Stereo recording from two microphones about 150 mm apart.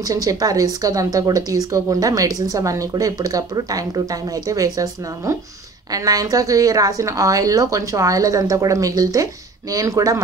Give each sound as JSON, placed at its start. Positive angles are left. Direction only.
{"t": 0.0, "sound": "a woman's voice", "side_deg": -25}